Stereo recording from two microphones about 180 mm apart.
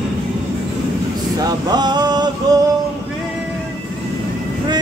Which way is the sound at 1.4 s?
25° right (ahead or behind).